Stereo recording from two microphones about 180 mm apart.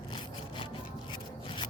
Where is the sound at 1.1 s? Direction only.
25° left (ahead or behind).